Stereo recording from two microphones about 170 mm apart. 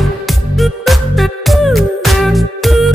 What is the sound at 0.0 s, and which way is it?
Music, centre (ahead or behind).